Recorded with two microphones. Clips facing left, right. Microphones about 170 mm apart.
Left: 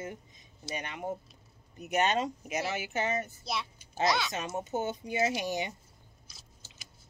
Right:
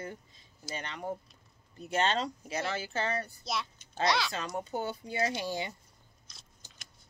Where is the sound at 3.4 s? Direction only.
Centre (ahead or behind).